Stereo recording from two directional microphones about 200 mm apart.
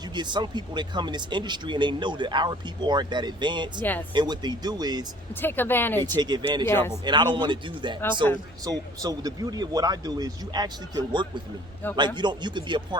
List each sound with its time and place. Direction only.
0.1 s speech: 20° right (ahead or behind)
5.3 s speech: 10° left (ahead or behind)
6.1 s speech: 20° right (ahead or behind)
6.7 s speech: 10° left (ahead or behind)
7.0 s speech: 20° right (ahead or behind)